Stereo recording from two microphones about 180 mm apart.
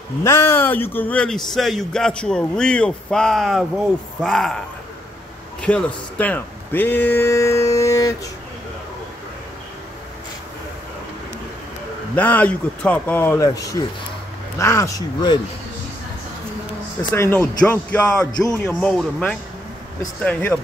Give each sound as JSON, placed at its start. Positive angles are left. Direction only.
{"t": 0.2, "sound": "a man's voice", "side_deg": 15}
{"t": 5.6, "sound": "speech", "side_deg": 5}
{"t": 12.2, "sound": "speech", "side_deg": 10}
{"t": 17.1, "sound": "a man's voice", "side_deg": 10}